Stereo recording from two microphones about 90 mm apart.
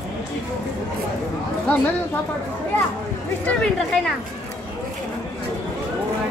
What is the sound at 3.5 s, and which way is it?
Speech, 5° left (ahead or behind).